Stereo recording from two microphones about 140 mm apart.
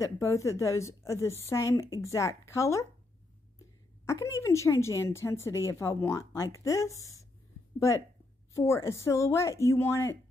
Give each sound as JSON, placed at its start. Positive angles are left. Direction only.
{"t": 0.0, "sound": "a woman's voice", "side_deg": 20}
{"t": 8.5, "sound": "a woman's voice", "side_deg": 20}